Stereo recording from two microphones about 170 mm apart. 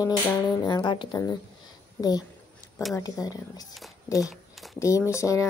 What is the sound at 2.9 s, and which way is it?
Speech, 20° left (ahead or behind).